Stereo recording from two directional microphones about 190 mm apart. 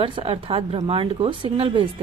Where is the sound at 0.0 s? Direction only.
30° right (ahead or behind).